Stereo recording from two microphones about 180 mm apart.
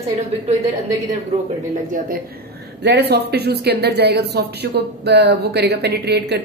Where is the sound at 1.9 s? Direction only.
50° right (ahead or behind).